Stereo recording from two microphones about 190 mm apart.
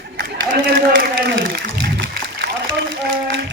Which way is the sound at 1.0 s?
50° right (ahead or behind).